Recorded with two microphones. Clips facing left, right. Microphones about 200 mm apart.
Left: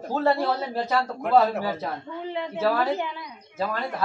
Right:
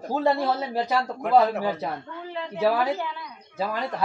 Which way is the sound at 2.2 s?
20° left (ahead or behind).